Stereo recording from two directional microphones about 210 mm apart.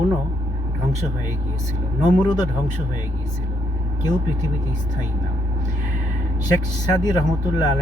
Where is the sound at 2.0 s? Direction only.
20° left (ahead or behind).